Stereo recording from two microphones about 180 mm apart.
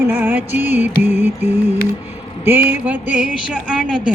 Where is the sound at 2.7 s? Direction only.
10° right (ahead or behind).